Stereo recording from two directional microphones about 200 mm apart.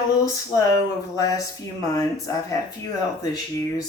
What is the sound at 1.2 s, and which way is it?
Speech, 15° left (ahead or behind).